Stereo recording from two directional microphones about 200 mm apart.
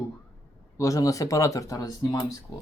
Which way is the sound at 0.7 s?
15° left (ahead or behind).